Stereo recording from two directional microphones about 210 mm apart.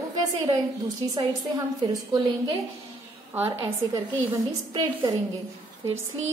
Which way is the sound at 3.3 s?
10° right (ahead or behind).